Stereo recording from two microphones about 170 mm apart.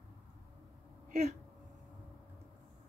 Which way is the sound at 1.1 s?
40° right (ahead or behind).